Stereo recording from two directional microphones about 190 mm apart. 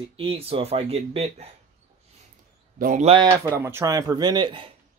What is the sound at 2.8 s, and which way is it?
Speech, 45° right (ahead or behind).